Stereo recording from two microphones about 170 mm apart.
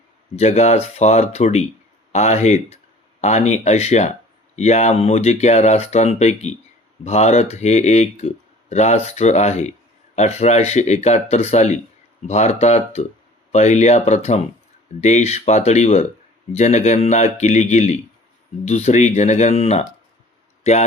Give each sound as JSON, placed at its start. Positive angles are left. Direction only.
{"t": 0.3, "sound": "speech", "side_deg": 40}